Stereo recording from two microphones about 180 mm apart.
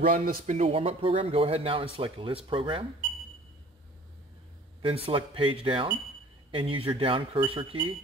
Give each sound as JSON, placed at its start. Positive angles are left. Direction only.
{"t": 0.0, "sound": "speech", "side_deg": -50}
{"t": 4.8, "sound": "speech", "side_deg": -30}